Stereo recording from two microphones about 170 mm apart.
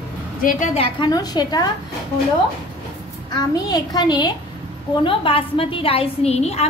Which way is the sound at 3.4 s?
25° left (ahead or behind).